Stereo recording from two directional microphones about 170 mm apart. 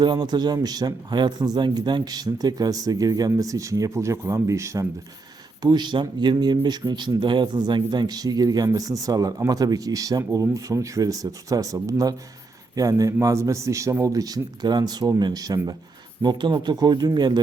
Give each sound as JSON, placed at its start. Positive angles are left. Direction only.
{"t": 0.0, "sound": "speech", "side_deg": -25}